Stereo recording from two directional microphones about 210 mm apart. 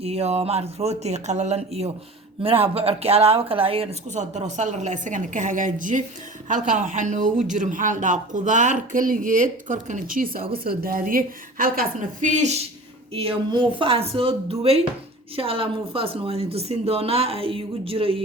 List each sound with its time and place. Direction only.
0.0 s speech: 30° right (ahead or behind)
10.4 s a woman's voice: 25° right (ahead or behind)
10.7 s a woman's voice: 45° right (ahead or behind)
13.1 s a woman's voice: 25° right (ahead or behind)